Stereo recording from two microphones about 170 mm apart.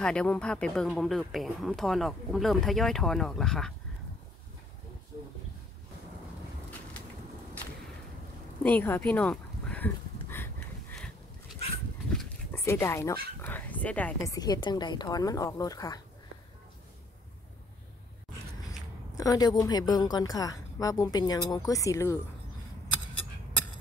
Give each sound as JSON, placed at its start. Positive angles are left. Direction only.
{"t": 0.0, "sound": "speech", "side_deg": 5}
{"t": 8.6, "sound": "speech", "side_deg": 10}
{"t": 10.3, "sound": "a sound", "side_deg": 10}
{"t": 12.6, "sound": "speech", "side_deg": 15}
{"t": 13.4, "sound": "a sound", "side_deg": 10}
{"t": 14.3, "sound": "speech", "side_deg": 25}
{"t": 18.7, "sound": "speech", "side_deg": 20}